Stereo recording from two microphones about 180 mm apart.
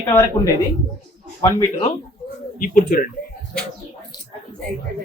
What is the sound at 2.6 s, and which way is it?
Speech, 50° left (ahead or behind).